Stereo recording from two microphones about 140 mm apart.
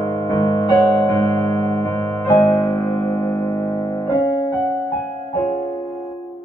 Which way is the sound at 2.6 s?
30° left (ahead or behind).